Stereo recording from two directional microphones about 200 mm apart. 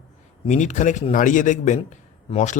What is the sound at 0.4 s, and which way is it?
A man's voice, 35° left (ahead or behind).